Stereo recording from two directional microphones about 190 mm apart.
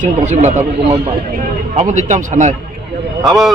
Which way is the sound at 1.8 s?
40° right (ahead or behind).